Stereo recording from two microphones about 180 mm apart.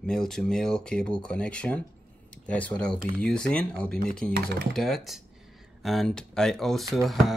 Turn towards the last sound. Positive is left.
turn(degrees=0)  # may be behind; listen again after turning